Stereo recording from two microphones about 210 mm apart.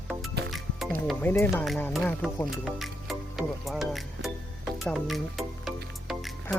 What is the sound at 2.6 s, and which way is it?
Music, centre (ahead or behind).